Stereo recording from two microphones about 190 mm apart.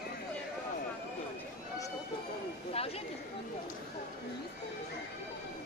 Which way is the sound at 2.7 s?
30° left (ahead or behind).